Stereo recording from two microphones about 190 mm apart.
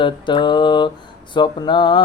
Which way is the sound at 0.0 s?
25° left (ahead or behind).